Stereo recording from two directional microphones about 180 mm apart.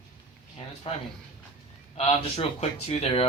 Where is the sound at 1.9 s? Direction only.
35° left (ahead or behind).